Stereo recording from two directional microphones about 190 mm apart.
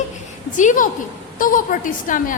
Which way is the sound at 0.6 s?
40° left (ahead or behind).